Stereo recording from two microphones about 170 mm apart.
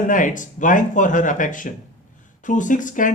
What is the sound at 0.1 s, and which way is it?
Speech, 50° left (ahead or behind).